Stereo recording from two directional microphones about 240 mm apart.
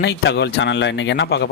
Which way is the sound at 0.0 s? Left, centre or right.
Left.